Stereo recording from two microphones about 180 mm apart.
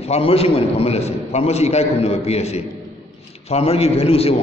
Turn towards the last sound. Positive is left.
turn(degrees=35)  # may be behind; listen again after turning